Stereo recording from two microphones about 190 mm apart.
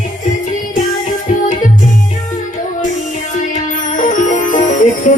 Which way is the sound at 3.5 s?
40° left (ahead or behind).